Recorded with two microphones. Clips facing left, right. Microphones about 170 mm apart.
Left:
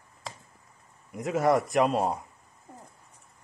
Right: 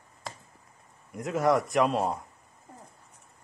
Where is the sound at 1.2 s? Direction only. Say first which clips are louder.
Left 1 dB; 5° left (ahead or behind).